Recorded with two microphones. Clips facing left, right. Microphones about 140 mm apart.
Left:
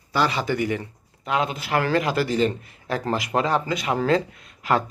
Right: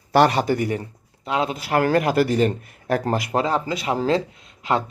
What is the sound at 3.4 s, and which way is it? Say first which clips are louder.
Speech: even; 30° right (ahead or behind).